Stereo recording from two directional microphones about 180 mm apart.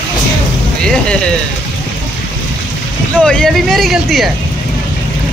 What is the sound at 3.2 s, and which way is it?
Speech, 5° left (ahead or behind).